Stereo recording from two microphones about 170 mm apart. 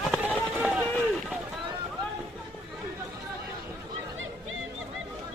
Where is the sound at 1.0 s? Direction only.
5° right (ahead or behind).